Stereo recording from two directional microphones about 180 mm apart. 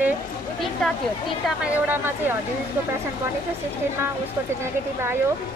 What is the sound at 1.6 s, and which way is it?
Speech, 10° right (ahead or behind).